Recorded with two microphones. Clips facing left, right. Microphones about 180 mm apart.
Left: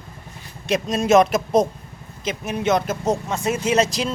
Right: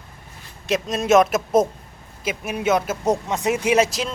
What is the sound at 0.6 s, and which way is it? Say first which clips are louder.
Speech: left 1 dB; centre (ahead or behind).